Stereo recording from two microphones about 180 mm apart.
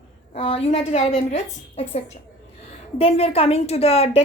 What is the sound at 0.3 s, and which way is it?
Speech, 30° left (ahead or behind).